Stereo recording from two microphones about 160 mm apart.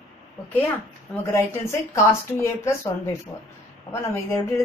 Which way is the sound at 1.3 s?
15° left (ahead or behind).